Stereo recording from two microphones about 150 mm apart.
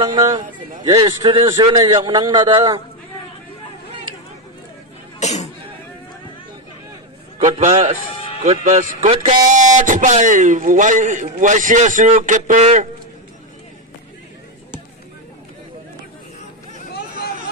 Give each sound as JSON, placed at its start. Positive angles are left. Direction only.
{"t": 0.0, "sound": "a man's voice", "side_deg": -25}
{"t": 5.2, "sound": "speech", "side_deg": 50}
{"t": 7.4, "sound": "a man's voice", "side_deg": -50}